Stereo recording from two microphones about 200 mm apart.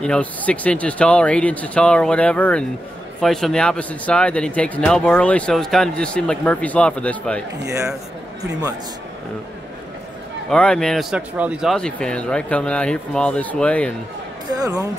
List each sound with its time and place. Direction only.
0.0 s speech: 5° left (ahead or behind)
7.6 s a man's voice: 15° right (ahead or behind)
10.5 s speech: 5° left (ahead or behind)
14.5 s speech: 15° right (ahead or behind)